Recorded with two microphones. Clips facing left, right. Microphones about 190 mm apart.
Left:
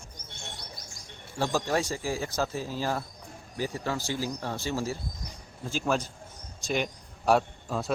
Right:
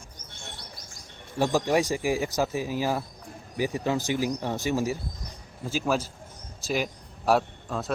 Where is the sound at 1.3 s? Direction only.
15° right (ahead or behind).